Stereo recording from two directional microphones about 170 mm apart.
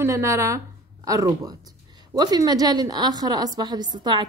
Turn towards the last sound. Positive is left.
turn(degrees=-25)  # may be behind; listen again after turning